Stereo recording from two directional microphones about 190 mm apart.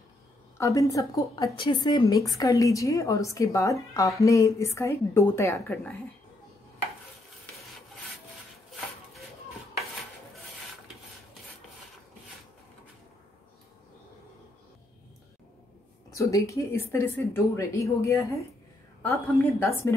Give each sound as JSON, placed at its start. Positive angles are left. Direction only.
{"t": 0.6, "sound": "a woman's voice", "side_deg": 15}
{"t": 16.2, "sound": "a woman's voice", "side_deg": 15}